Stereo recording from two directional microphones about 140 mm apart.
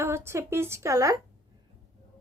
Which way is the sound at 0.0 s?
20° right (ahead or behind).